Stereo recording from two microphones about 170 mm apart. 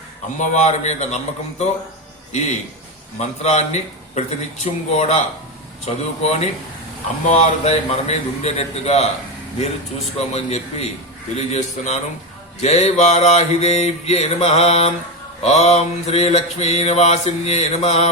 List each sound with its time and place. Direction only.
0.3 s a man's voice: 45° left (ahead or behind)
3.2 s mantra: 40° left (ahead or behind)
10.2 s mantra: 40° left (ahead or behind)